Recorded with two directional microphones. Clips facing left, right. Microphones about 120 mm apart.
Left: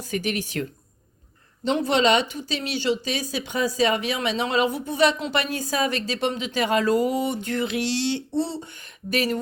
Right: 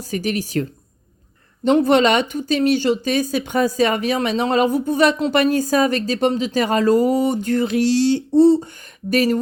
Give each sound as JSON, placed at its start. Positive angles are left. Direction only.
{"t": 0.0, "sound": "speech", "side_deg": -40}
{"t": 1.6, "sound": "speech", "side_deg": -50}